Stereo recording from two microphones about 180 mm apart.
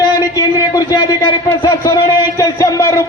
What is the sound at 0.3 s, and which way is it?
A man's voice, 20° left (ahead or behind).